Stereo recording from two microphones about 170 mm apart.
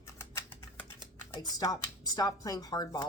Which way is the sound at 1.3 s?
20° left (ahead or behind).